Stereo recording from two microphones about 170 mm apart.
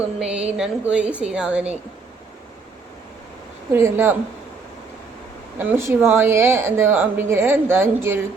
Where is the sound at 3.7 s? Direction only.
15° right (ahead or behind).